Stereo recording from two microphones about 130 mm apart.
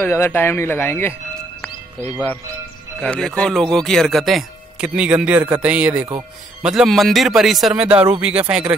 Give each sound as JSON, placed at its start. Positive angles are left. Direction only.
{"t": 0.0, "sound": "speech", "side_deg": 15}
{"t": 3.0, "sound": "speech", "side_deg": 5}